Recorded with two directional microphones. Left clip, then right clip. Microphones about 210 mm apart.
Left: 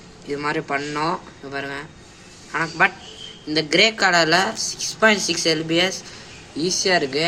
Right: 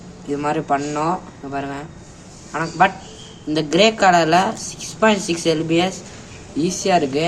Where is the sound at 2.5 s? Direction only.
15° left (ahead or behind).